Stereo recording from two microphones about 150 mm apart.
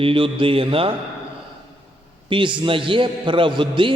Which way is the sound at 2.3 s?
35° right (ahead or behind).